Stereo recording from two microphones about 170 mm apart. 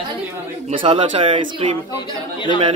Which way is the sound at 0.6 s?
30° right (ahead or behind).